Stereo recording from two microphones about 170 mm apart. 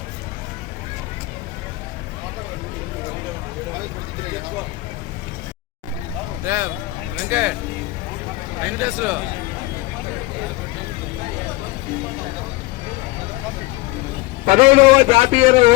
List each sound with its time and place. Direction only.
6.4 s vehicle: 15° right (ahead or behind)
7.2 s speech: 10° right (ahead or behind)
8.6 s speech: 10° right (ahead or behind)
14.4 s a man's voice: 40° right (ahead or behind)